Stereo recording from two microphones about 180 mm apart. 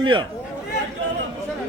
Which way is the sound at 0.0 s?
25° right (ahead or behind).